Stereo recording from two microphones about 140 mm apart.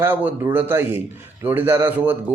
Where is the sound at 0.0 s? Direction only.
15° right (ahead or behind).